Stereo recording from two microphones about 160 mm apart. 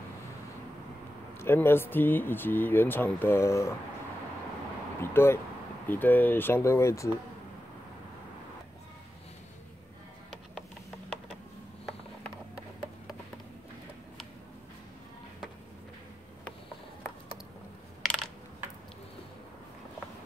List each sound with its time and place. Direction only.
1.4 s speech: 15° left (ahead or behind)
5.0 s speech: 15° left (ahead or behind)